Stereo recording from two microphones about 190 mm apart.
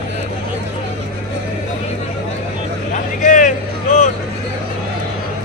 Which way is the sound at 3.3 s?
40° left (ahead or behind).